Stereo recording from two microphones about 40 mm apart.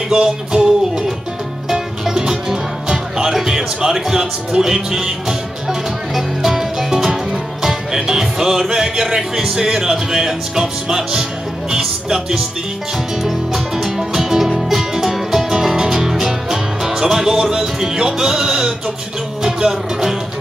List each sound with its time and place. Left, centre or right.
0.1 s music: right; by 8.7 s centre
8.7 s speech: centre
11.7 s music: centre